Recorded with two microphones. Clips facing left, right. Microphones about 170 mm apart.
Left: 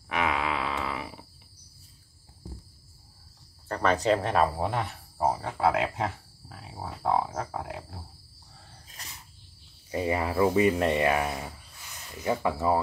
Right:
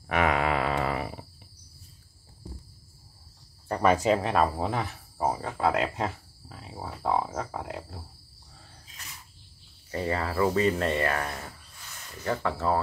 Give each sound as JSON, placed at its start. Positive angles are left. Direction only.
{"t": 0.1, "sound": "a sound", "side_deg": -50}
{"t": 3.6, "sound": "speech", "side_deg": -15}
{"t": 9.8, "sound": "speech", "side_deg": 15}